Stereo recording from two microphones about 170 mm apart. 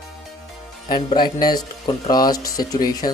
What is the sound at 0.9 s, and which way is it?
Speech, 25° left (ahead or behind).